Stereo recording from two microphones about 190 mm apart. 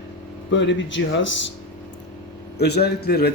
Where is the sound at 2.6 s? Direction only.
60° left (ahead or behind).